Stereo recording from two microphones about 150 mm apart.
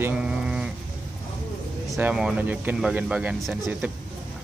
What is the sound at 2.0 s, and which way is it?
A man's voice, 5° right (ahead or behind).